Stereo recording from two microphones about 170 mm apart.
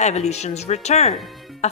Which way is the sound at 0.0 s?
40° left (ahead or behind).